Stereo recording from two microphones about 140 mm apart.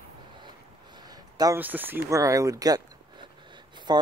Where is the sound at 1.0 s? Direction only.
25° right (ahead or behind).